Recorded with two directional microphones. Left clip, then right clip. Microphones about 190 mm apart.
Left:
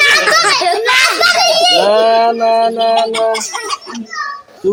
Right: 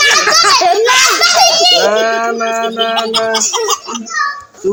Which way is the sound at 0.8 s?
5° left (ahead or behind).